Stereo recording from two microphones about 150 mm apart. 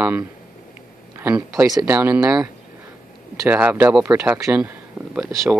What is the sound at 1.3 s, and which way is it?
Speech, 25° right (ahead or behind).